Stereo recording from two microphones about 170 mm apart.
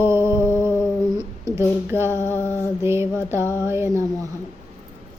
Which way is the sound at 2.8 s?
15° right (ahead or behind).